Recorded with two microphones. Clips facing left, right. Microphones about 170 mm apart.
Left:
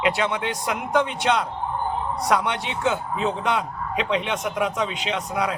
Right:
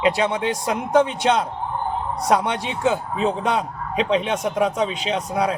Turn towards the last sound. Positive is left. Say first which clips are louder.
# right 3 dB
turn(degrees=-35)  # may be behind; listen again after turning